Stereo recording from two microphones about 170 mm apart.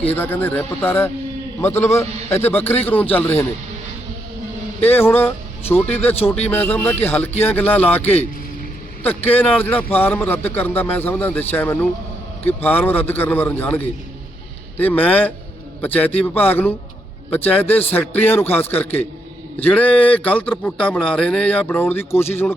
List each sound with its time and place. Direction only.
0.1 s speech: 10° left (ahead or behind)
4.9 s speech: 10° left (ahead or behind)
6.1 s speech: 35° left (ahead or behind)
6.5 s speech: 10° left (ahead or behind)
9.0 s speech: 10° left (ahead or behind)